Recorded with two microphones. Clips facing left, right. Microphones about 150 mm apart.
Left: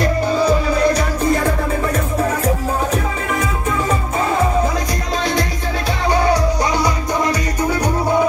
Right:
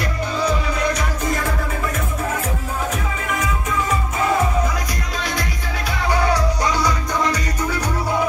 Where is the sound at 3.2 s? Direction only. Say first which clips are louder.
Left 3 dB; 35° left (ahead or behind).